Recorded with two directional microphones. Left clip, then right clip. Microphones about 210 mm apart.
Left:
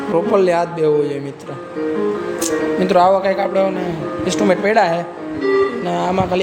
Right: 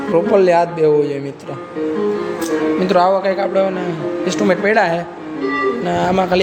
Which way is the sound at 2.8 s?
Centre (ahead or behind).